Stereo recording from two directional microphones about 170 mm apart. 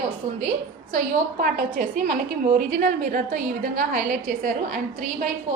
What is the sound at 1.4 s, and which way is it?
A woman's voice, 60° right (ahead or behind).